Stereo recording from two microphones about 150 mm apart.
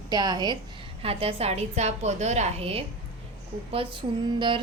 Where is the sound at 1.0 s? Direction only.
40° right (ahead or behind).